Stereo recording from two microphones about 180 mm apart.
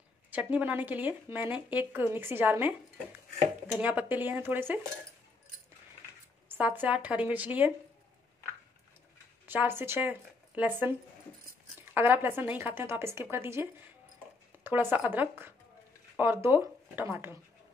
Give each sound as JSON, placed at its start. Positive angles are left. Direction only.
{"t": 0.3, "sound": "speech", "side_deg": -10}
{"t": 3.8, "sound": "speech", "side_deg": -10}
{"t": 6.5, "sound": "speech", "side_deg": -10}
{"t": 9.5, "sound": "speech", "side_deg": -10}